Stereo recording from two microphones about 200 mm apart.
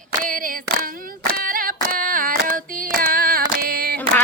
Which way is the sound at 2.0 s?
45° right (ahead or behind).